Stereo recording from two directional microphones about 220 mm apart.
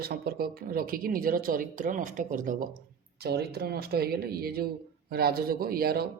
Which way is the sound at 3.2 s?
45° right (ahead or behind).